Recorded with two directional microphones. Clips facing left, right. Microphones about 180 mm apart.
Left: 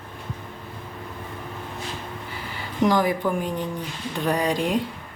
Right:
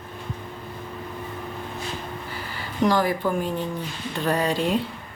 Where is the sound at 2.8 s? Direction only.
20° left (ahead or behind).